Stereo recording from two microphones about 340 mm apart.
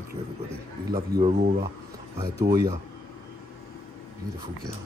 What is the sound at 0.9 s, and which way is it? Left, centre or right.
Speech, centre.